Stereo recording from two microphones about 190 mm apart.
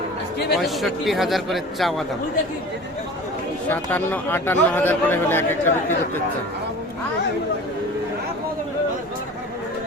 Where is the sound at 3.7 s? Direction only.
10° left (ahead or behind).